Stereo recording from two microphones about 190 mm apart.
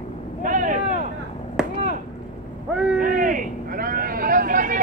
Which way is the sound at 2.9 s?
45° right (ahead or behind).